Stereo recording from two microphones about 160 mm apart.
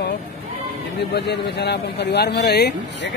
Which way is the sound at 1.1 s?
90° left.